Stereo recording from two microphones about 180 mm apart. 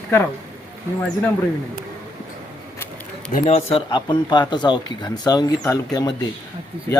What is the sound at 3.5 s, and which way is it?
A man's voice, 30° left (ahead or behind).